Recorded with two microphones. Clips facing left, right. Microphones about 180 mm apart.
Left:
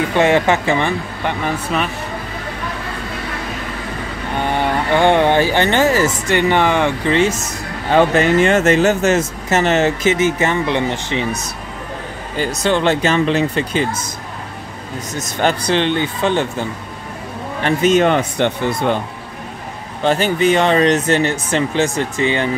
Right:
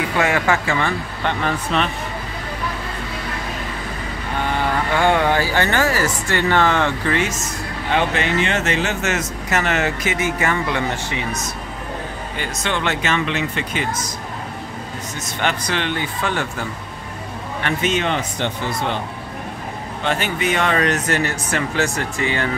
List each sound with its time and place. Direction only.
0.1 s speech: 25° left (ahead or behind); by 1.9 s 10° left (ahead or behind)
4.5 s speech: 20° left (ahead or behind)
7.9 s speech: 40° left (ahead or behind); by 11.2 s 20° left (ahead or behind)
12.4 s speech: 35° left (ahead or behind)
15.1 s speech: 35° left (ahead or behind)
17.6 s speech: 45° left (ahead or behind)
20.1 s speech: 35° left (ahead or behind)